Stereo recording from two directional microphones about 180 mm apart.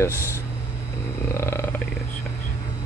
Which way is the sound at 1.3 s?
15° left (ahead or behind).